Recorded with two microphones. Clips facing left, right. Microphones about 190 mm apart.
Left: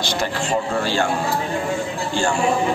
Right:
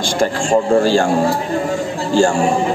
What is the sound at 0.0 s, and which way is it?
Speech, 50° right (ahead or behind).